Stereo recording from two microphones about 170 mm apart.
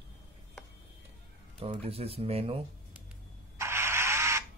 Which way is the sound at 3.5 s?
15° right (ahead or behind).